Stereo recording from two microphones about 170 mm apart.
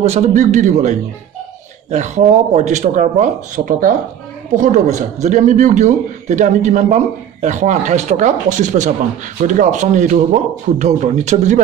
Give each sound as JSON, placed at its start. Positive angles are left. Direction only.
{"t": 0.0, "sound": "a man's voice", "side_deg": -40}